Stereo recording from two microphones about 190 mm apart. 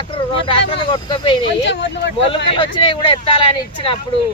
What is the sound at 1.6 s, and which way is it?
Speech, 65° left (ahead or behind).